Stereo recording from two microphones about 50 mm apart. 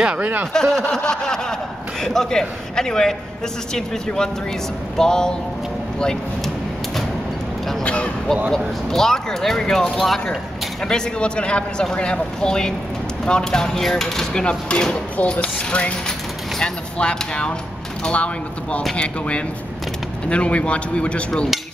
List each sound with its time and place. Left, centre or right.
0.0 s speech: right
0.5 s a man's voice: centre
7.8 s a sound: left
8.5 s a man's voice: centre
14.4 s speech: left